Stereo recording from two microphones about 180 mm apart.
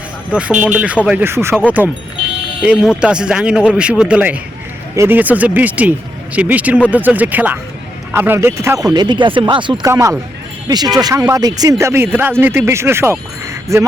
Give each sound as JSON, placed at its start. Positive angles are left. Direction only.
{"t": 0.3, "sound": "speech", "side_deg": -5}